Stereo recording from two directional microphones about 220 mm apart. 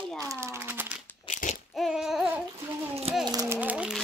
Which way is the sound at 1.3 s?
35° left (ahead or behind).